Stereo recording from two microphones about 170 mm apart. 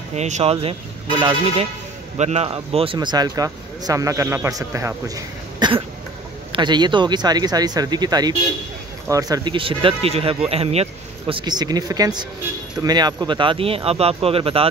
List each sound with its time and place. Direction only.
0.1 s speech: 40° right (ahead or behind)